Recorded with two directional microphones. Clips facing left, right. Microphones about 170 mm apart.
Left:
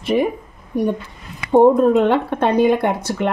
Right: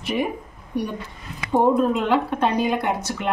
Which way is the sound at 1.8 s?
55° left (ahead or behind).